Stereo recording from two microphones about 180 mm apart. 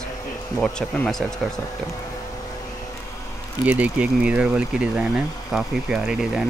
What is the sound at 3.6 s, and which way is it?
Speech, 10° right (ahead or behind).